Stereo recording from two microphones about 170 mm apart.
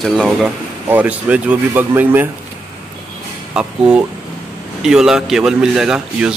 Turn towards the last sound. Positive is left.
turn(degrees=-5)  # may be behind; listen again after turning